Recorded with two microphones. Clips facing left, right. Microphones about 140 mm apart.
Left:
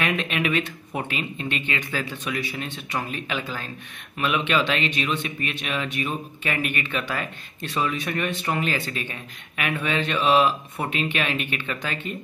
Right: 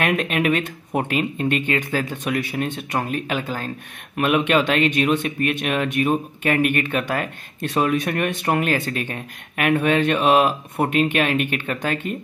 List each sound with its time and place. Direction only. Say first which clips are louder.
0.0 s speech: right 5 dB; 45° right (ahead or behind)